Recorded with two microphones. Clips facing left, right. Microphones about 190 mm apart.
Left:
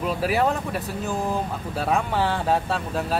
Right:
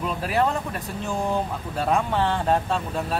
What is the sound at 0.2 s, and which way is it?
Speech, 5° left (ahead or behind).